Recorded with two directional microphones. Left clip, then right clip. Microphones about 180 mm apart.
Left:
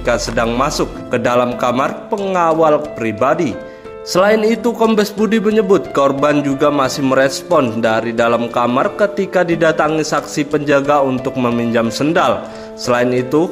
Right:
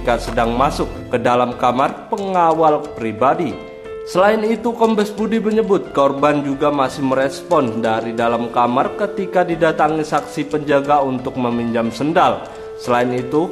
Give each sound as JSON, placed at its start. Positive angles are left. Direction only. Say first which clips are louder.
{"t": 0.0, "sound": "speech", "louder": "left 1 dB", "side_deg": 15}